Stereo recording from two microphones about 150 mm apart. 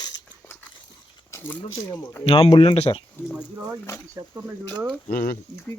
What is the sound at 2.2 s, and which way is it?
Speech, 40° left (ahead or behind).